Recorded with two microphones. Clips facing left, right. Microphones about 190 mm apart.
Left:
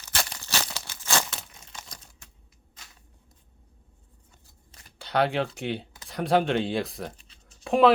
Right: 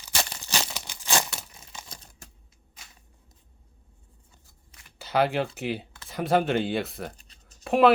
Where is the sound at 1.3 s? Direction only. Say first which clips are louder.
Even; 5° right (ahead or behind).